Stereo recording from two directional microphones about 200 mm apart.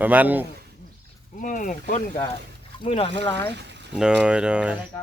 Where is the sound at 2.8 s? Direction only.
30° left (ahead or behind).